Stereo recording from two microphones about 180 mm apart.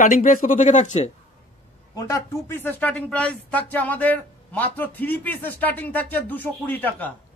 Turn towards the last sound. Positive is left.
turn(degrees=10)  # may be behind; listen again after turning